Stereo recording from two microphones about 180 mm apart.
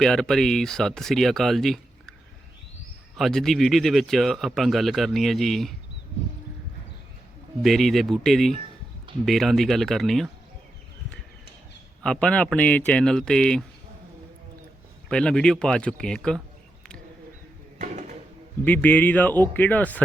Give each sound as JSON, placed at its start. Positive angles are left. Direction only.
{"t": 0.0, "sound": "speech", "side_deg": 0}
{"t": 3.2, "sound": "speech", "side_deg": 0}
{"t": 7.6, "sound": "speech", "side_deg": 0}
{"t": 12.0, "sound": "speech", "side_deg": 5}
{"t": 15.1, "sound": "speech", "side_deg": 5}
{"t": 17.7, "sound": "a sound", "side_deg": -40}
{"t": 18.6, "sound": "speech", "side_deg": 10}